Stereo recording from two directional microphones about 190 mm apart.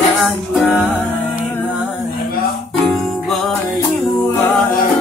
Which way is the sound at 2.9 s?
Centre (ahead or behind).